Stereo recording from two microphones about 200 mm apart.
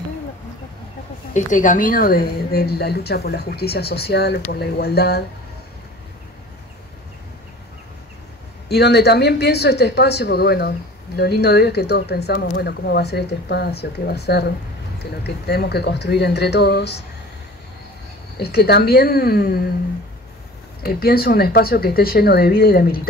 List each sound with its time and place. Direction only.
1.3 s a woman's voice: 40° left (ahead or behind)
8.6 s speech: 55° left (ahead or behind)
18.4 s a woman's voice: 50° left (ahead or behind)
20.8 s a woman's voice: 50° left (ahead or behind)